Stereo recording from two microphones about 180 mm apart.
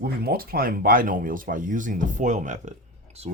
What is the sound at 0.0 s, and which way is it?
Speech, 55° right (ahead or behind).